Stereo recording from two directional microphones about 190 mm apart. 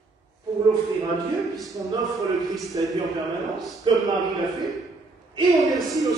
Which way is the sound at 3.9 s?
25° right (ahead or behind).